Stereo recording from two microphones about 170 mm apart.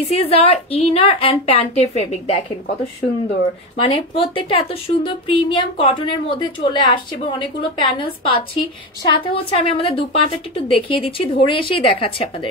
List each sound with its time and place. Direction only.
0.1 s a woman's voice: 35° left (ahead or behind)
3.7 s a woman's voice: 30° left (ahead or behind)